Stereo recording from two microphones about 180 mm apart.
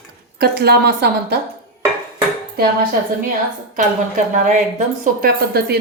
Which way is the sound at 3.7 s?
45° right (ahead or behind).